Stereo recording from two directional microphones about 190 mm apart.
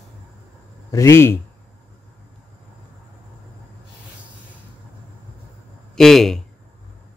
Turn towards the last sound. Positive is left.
turn(degrees=0)  # may be behind; listen again after turning